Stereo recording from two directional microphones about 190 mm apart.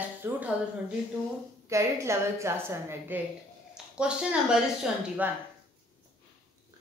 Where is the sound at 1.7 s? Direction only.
15° right (ahead or behind).